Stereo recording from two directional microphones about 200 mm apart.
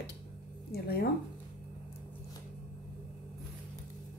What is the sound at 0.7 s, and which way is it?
Speech, 50° left (ahead or behind).